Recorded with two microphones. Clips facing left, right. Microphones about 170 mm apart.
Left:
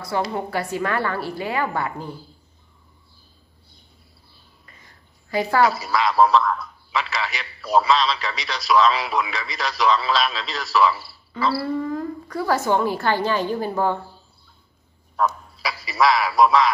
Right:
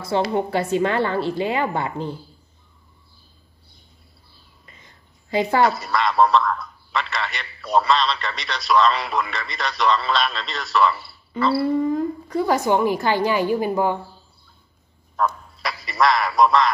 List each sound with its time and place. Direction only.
0.3 s a woman's voice: 20° right (ahead or behind)
4.6 s a sound: 20° right (ahead or behind)
5.6 s a man's voice: centre (ahead or behind)
11.5 s speech: 20° right (ahead or behind)
15.1 s speech: centre (ahead or behind)